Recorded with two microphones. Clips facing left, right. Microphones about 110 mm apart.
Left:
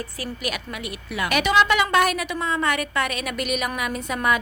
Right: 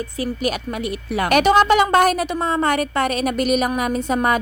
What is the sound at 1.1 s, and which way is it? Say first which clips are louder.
Speech: right 6 dB; 40° right (ahead or behind).